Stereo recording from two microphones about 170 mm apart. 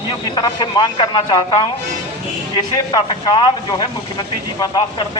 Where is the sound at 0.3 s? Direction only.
25° left (ahead or behind).